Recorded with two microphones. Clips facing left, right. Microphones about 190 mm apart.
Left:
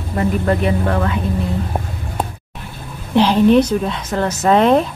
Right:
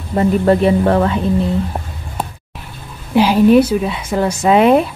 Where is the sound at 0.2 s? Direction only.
30° right (ahead or behind).